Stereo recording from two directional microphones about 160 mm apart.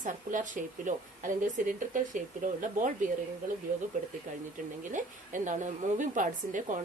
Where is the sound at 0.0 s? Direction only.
50° right (ahead or behind).